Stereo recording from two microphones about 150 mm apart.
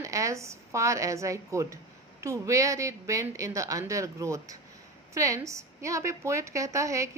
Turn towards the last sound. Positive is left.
turn(degrees=-20)  # may be behind; listen again after turning